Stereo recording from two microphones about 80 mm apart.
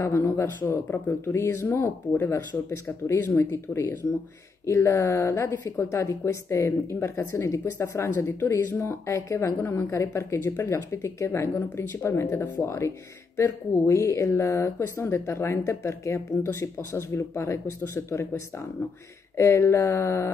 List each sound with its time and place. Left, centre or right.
0.0 s speech: left
19.3 s speech: left